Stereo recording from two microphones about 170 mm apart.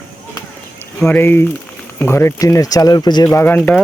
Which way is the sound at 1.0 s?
10° left (ahead or behind).